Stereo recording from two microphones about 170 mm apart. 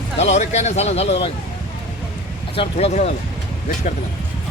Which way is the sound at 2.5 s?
40° left (ahead or behind).